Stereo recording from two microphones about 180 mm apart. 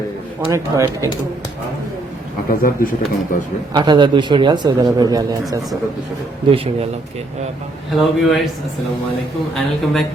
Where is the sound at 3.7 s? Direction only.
25° right (ahead or behind).